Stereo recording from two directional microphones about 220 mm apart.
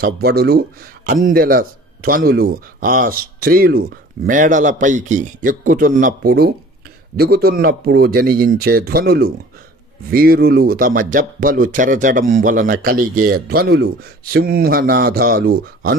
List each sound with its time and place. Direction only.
0.0 s speech: 45° right (ahead or behind)